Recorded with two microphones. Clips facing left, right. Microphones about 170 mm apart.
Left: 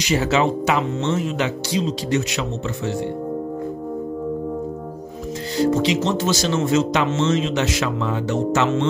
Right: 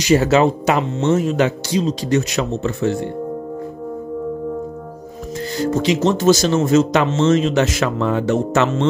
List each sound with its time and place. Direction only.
0.0 s speech: 45° right (ahead or behind)
5.6 s speech: 50° right (ahead or behind)